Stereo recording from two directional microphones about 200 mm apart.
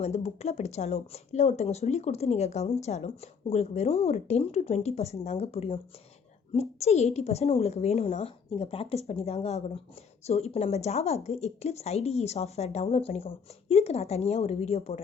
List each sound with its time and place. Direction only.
0.0 s speech: 30° left (ahead or behind)